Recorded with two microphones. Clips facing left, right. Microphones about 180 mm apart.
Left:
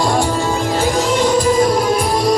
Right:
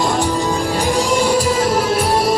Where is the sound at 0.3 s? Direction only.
15° right (ahead or behind).